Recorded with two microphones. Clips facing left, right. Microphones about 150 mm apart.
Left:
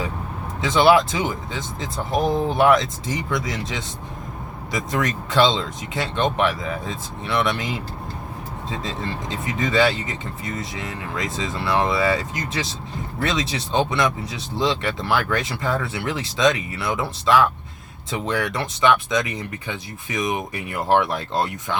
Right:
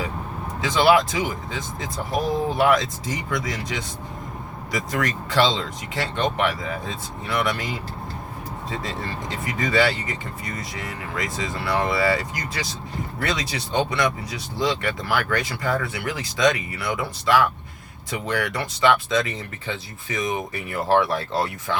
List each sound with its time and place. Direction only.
0.6 s speech: 25° left (ahead or behind)